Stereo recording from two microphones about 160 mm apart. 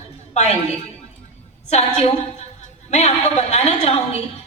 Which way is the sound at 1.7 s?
45° left (ahead or behind).